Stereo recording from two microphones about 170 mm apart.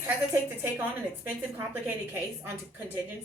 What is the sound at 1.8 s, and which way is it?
Speech, 10° right (ahead or behind).